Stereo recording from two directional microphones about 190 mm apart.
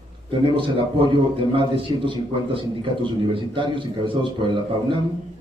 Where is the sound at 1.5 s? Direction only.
25° right (ahead or behind).